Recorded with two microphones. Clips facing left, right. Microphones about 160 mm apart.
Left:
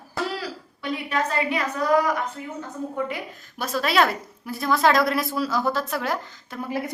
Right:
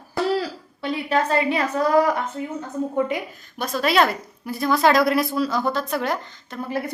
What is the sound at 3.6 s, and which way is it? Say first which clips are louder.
A woman's voice: right 2 dB; centre (ahead or behind).